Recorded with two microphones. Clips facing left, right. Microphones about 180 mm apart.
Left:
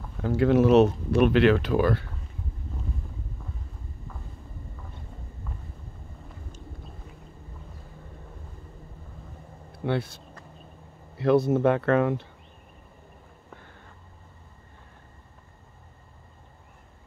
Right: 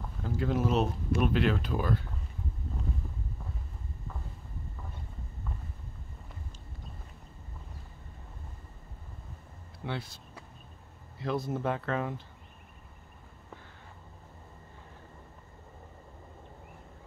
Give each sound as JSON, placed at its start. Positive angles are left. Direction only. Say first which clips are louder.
{"t": 0.2, "sound": "speech", "louder": "left 10 dB", "side_deg": 75}
{"t": 9.8, "sound": "speech", "louder": "left 10 dB", "side_deg": 65}